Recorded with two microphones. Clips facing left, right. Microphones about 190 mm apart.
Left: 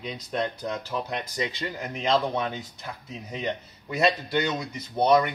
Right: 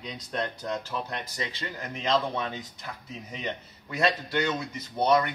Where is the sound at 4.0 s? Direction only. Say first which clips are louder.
Left 2 dB; 15° left (ahead or behind).